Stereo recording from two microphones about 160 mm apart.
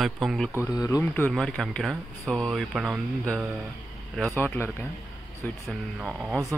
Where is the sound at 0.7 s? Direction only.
20° left (ahead or behind).